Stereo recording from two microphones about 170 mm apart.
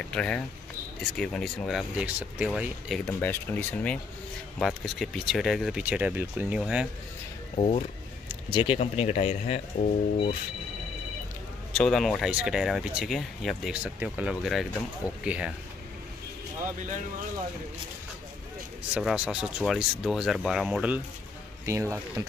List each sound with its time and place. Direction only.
0.0 s speech: 5° left (ahead or behind)
3.1 s speech: 10° left (ahead or behind); by 6.9 s 5° right (ahead or behind)
7.5 s speech: 35° left (ahead or behind)
11.7 s speech: 5° left (ahead or behind)
18.9 s speech: 5° right (ahead or behind)
21.6 s speech: 15° right (ahead or behind)